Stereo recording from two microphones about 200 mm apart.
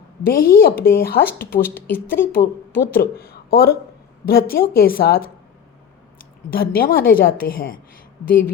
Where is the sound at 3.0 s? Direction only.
50° left (ahead or behind).